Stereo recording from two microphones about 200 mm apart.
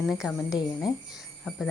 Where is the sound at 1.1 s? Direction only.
Centre (ahead or behind).